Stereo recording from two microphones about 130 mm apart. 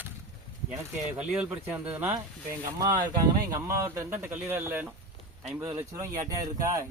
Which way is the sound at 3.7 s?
20° right (ahead or behind).